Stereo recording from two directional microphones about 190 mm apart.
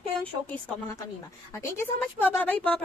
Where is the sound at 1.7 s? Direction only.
10° left (ahead or behind).